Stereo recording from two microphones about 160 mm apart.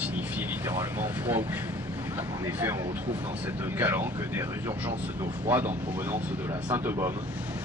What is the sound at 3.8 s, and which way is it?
Speech, 15° right (ahead or behind).